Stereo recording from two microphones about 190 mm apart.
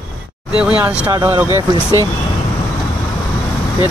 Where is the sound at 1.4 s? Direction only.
20° left (ahead or behind).